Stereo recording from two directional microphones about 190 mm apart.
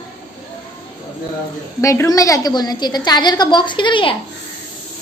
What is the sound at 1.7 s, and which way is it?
A woman's voice, 15° left (ahead or behind).